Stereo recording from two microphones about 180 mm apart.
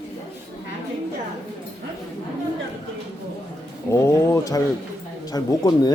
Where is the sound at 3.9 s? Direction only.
15° left (ahead or behind).